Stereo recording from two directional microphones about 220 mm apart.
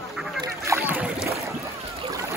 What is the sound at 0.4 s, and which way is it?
Boat, 10° right (ahead or behind).